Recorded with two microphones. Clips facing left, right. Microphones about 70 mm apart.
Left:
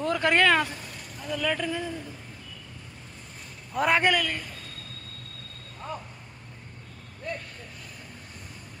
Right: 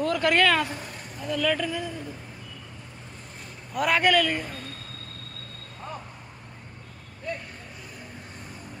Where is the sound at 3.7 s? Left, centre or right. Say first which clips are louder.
Even; left.